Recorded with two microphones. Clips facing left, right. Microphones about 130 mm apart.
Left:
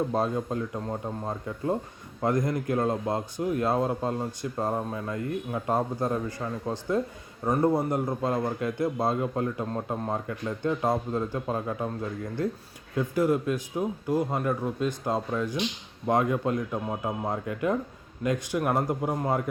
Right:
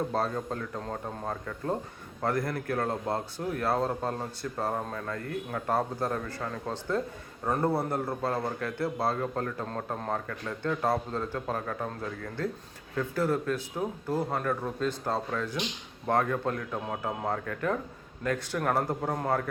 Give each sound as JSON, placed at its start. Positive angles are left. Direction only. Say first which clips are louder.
{"t": 0.1, "sound": "a man's voice", "louder": "left 3 dB", "side_deg": 15}